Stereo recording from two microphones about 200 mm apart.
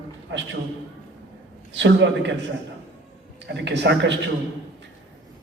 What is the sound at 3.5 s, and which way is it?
Speech, 60° right (ahead or behind).